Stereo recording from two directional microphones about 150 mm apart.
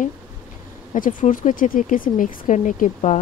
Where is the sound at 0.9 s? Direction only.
60° left (ahead or behind).